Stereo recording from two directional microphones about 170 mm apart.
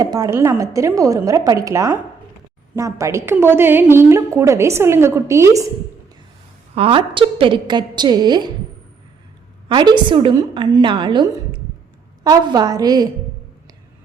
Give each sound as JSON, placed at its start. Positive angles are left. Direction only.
{"t": 0.0, "sound": "a woman's voice", "side_deg": -20}
{"t": 6.7, "sound": "a woman's voice", "side_deg": -30}
{"t": 9.6, "sound": "a woman's voice", "side_deg": -25}